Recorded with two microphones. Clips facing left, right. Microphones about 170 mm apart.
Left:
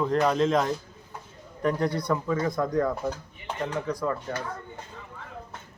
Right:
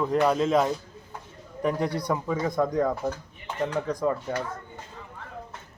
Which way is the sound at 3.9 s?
20° right (ahead or behind).